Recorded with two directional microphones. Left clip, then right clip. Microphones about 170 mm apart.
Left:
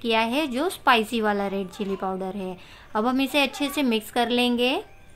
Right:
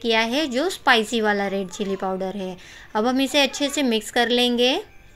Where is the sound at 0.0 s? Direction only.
5° right (ahead or behind).